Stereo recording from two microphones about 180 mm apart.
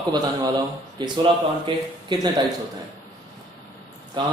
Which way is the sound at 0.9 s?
25° right (ahead or behind).